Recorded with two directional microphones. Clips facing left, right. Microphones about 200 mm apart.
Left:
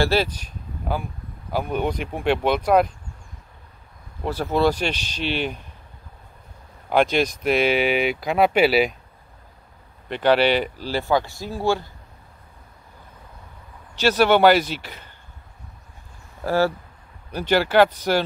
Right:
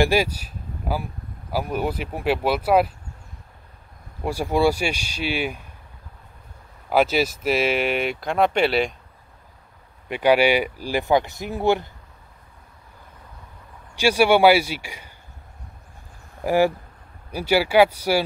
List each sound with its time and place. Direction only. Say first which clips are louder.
0.0 s speech: right 1 dB; 10° right (ahead or behind)
4.2 s speech: even; 10° right (ahead or behind)
6.9 s speech: even; 5° right (ahead or behind)
10.0 s speech: right 1 dB; 10° right (ahead or behind)
13.9 s speech: even; 10° right (ahead or behind)
16.4 s speech: right 2 dB; 15° right (ahead or behind)